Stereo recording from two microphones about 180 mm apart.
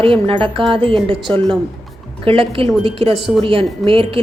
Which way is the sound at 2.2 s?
30° right (ahead or behind).